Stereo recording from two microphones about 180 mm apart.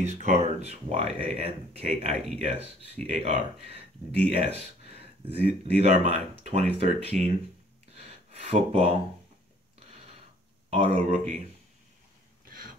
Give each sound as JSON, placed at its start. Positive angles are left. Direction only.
{"t": 0.0, "sound": "speech", "side_deg": -40}
{"t": 7.9, "sound": "gasp", "side_deg": -35}
{"t": 10.7, "sound": "speech", "side_deg": -35}